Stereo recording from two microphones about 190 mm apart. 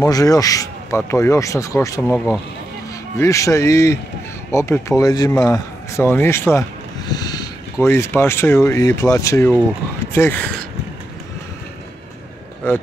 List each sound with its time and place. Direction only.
0.0 s speech: 20° left (ahead or behind)
2.1 s speech: centre (ahead or behind)
3.2 s speech: 15° left (ahead or behind)
12.6 s speech: 10° left (ahead or behind)